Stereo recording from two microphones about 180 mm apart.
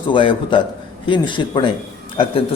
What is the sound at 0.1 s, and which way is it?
A man's voice, 30° left (ahead or behind).